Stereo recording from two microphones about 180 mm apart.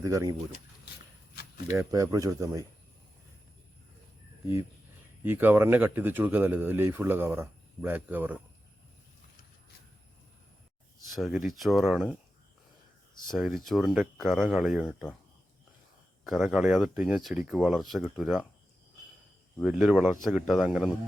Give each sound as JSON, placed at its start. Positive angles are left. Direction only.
{"t": 0.0, "sound": "speech", "side_deg": -20}
{"t": 1.7, "sound": "speech", "side_deg": -20}
{"t": 5.2, "sound": "speech", "side_deg": -10}
{"t": 11.0, "sound": "speech", "side_deg": 0}
{"t": 13.2, "sound": "speech", "side_deg": 0}
{"t": 16.2, "sound": "speech", "side_deg": 0}
{"t": 19.6, "sound": "speech", "side_deg": -5}